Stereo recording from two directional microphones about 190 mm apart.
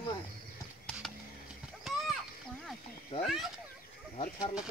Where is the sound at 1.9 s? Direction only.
Centre (ahead or behind).